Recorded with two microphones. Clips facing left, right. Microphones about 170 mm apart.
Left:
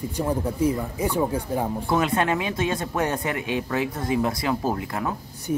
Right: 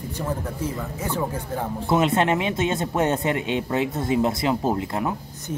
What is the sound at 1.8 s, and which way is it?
Speech, 25° right (ahead or behind).